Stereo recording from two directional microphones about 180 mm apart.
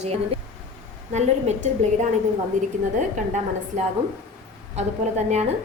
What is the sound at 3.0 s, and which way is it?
Speech, 45° right (ahead or behind).